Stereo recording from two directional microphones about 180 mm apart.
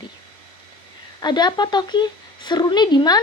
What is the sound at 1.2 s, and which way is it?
Speech, 25° left (ahead or behind).